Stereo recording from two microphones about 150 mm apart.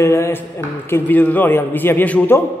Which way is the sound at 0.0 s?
20° left (ahead or behind).